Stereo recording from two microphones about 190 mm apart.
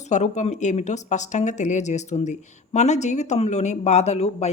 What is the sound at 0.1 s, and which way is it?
Speech, 40° left (ahead or behind).